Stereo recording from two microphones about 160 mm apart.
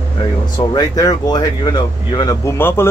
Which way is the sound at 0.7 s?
25° left (ahead or behind).